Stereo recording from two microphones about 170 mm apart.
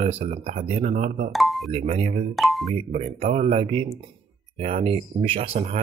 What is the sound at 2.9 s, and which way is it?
Speech, 45° right (ahead or behind).